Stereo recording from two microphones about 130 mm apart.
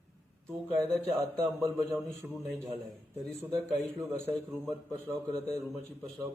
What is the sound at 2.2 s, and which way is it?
Speech, 10° right (ahead or behind).